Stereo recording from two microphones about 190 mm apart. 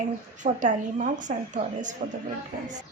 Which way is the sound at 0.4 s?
40° right (ahead or behind).